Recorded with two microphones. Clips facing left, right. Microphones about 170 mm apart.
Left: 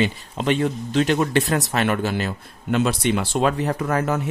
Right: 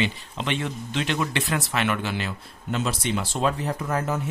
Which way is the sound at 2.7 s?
60° left (ahead or behind).